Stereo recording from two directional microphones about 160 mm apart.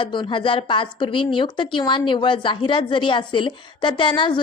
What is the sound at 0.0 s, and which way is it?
A woman's voice, 30° left (ahead or behind).